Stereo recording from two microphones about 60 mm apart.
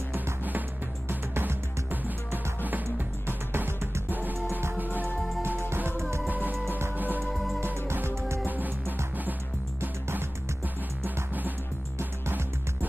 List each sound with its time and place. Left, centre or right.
0.1 s music: right
1.0 s music: right
5.8 s music: right
6.2 s music: right
7.2 s music: centre
7.6 s music: right
11.1 s music: right
12.0 s music: right